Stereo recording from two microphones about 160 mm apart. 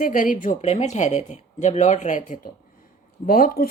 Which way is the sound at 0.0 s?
55° left (ahead or behind).